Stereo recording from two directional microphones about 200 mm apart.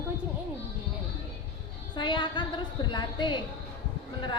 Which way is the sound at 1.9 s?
25° left (ahead or behind).